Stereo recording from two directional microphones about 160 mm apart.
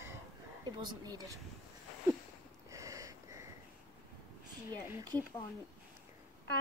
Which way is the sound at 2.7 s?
20° right (ahead or behind).